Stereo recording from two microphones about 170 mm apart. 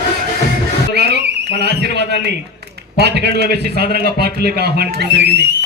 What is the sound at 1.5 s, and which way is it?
A man's voice, 80° right.